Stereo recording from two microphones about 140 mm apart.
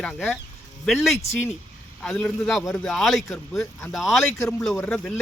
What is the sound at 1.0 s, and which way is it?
A man's voice, centre (ahead or behind).